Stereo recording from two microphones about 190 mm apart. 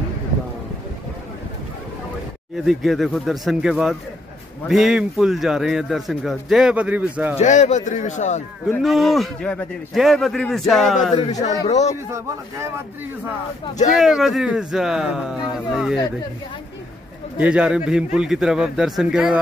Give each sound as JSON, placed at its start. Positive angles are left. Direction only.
{"t": 2.6, "sound": "a man's voice", "side_deg": 0}
{"t": 7.3, "sound": "a man's voice", "side_deg": 35}
{"t": 8.6, "sound": "a man's voice", "side_deg": 0}
{"t": 11.1, "sound": "speech", "side_deg": 25}
{"t": 13.9, "sound": "a man's voice", "side_deg": 0}
{"t": 17.4, "sound": "a man's voice", "side_deg": -5}